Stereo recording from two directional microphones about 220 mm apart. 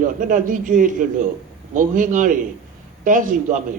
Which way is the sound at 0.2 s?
35° right (ahead or behind).